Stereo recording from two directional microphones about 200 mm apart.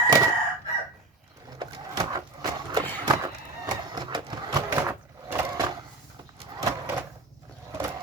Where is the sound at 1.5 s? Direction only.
20° right (ahead or behind).